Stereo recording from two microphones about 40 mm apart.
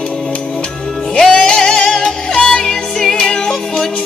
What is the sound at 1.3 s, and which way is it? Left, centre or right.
Music, left.